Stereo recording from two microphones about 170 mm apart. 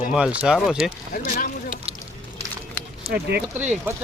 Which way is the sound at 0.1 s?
5° right (ahead or behind).